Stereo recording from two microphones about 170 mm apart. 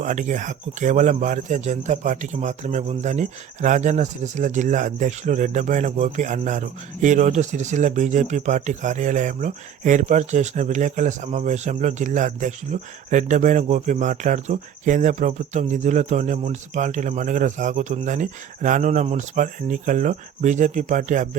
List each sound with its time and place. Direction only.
0.0 s speech: 45° right (ahead or behind)